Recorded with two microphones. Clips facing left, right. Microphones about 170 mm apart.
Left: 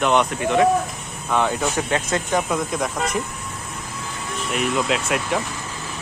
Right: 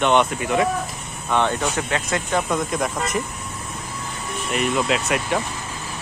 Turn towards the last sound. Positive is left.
turn(degrees=0)  # may be behind; listen again after turning